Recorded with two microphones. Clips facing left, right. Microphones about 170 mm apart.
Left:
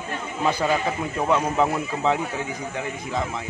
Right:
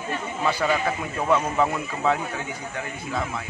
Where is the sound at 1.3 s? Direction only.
15° left (ahead or behind).